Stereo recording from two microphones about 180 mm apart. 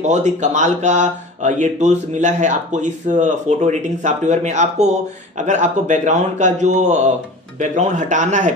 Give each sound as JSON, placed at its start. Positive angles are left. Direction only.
{"t": 0.1, "sound": "a man's voice", "side_deg": -40}